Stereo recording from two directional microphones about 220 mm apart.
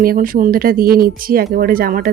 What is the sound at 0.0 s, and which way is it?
Speech, 40° right (ahead or behind).